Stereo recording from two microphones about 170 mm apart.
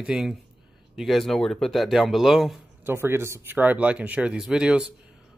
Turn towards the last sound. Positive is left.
turn(degrees=-5)  # may be behind; listen again after turning